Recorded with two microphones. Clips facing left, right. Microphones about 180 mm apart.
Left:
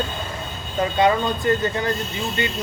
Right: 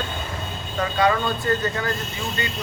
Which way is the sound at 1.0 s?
20° left (ahead or behind).